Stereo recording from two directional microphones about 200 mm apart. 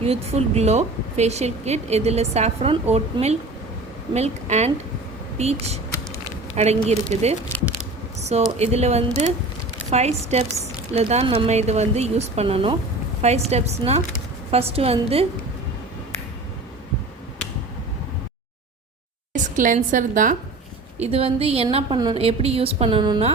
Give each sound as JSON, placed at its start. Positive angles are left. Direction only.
{"t": 0.0, "sound": "a woman's voice", "side_deg": -30}
{"t": 6.8, "sound": "a woman's voice", "side_deg": -35}
{"t": 7.5, "sound": "a sound", "side_deg": 10}
{"t": 8.3, "sound": "a woman's voice", "side_deg": -35}
{"t": 19.3, "sound": "a woman's voice", "side_deg": -40}
{"t": 21.0, "sound": "a woman's voice", "side_deg": -30}